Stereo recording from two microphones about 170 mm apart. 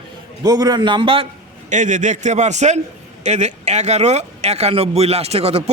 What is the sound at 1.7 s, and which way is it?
A man's voice, 45° right (ahead or behind).